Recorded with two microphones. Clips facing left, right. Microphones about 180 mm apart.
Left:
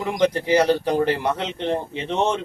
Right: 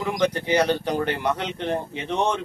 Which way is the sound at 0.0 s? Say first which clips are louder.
Left 3 dB; 30° left (ahead or behind).